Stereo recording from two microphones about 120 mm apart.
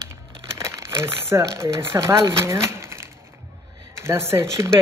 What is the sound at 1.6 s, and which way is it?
Speech, 20° right (ahead or behind).